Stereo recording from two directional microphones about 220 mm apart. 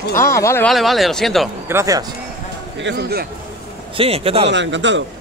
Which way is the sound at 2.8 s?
50° right (ahead or behind).